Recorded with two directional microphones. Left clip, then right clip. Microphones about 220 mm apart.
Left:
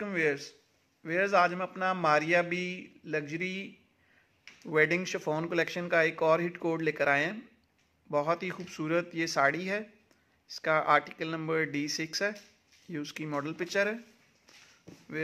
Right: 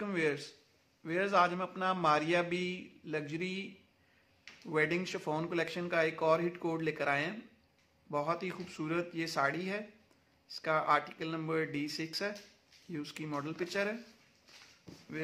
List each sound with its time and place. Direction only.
0.0 s a man's voice: 10° left (ahead or behind)
4.6 s speech: 25° left (ahead or behind)